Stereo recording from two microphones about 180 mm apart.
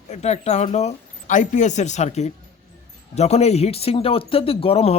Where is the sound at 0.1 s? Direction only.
35° left (ahead or behind).